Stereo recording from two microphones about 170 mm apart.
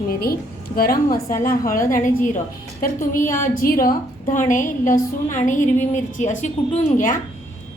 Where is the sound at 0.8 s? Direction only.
60° left (ahead or behind).